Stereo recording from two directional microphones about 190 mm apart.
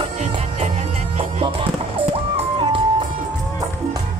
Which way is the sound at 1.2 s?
30° right (ahead or behind).